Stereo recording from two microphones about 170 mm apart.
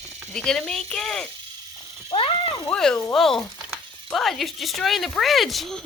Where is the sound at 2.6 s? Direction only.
5° left (ahead or behind).